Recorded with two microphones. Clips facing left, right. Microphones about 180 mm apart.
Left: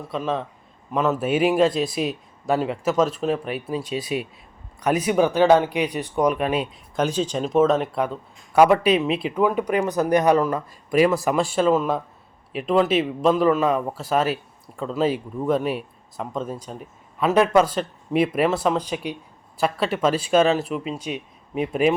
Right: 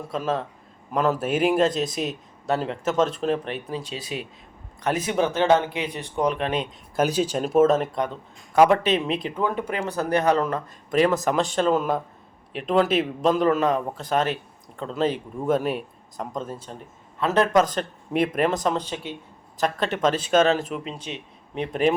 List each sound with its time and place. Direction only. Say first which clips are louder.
0.1 s speech: left 1 dB; centre (ahead or behind)
6.9 s speech: right 1 dB; 10° right (ahead or behind)